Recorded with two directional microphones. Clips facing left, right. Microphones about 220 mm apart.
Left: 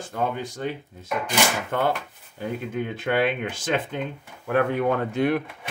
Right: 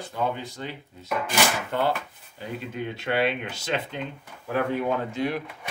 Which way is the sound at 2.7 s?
50° left (ahead or behind).